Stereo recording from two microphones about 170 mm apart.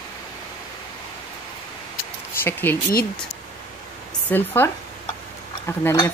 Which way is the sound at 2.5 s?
10° left (ahead or behind).